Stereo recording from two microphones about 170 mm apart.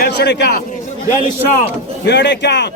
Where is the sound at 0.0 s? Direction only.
75° left (ahead or behind).